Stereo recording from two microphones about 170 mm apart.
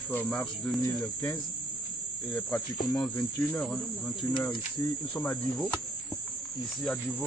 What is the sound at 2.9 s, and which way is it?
Cricket, centre (ahead or behind).